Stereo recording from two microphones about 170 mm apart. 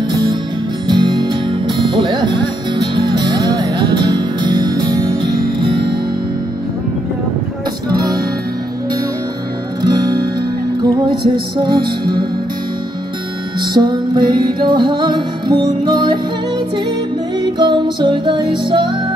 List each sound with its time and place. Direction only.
0.1 s music: 25° right (ahead or behind)
9.8 s music: 25° right (ahead or behind)
13.6 s music: 25° right (ahead or behind)